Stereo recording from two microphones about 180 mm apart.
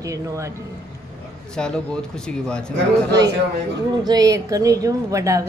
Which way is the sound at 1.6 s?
5° left (ahead or behind).